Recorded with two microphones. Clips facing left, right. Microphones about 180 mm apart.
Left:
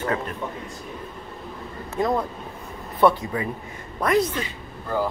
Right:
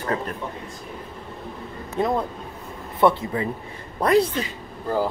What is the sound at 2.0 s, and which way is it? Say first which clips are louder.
A woman's voice: even; 25° right (ahead or behind).